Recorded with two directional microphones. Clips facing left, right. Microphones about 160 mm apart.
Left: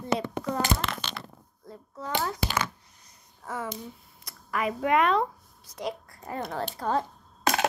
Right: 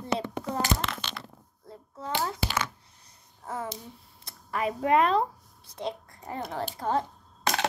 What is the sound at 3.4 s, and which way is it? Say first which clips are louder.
Speech: left 1 dB; 30° right (ahead or behind).